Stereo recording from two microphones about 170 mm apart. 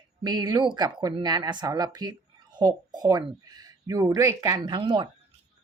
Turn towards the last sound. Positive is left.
turn(degrees=-30)  # may be behind; listen again after turning